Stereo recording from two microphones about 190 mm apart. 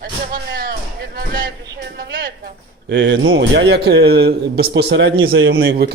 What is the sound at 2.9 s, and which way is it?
A man's voice, 75° right (ahead or behind).